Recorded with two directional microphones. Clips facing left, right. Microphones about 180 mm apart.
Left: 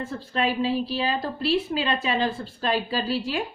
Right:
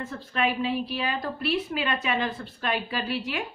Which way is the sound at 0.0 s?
30° left (ahead or behind).